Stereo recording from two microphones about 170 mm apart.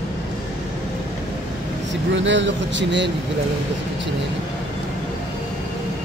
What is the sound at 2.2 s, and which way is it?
Speech, 90° right.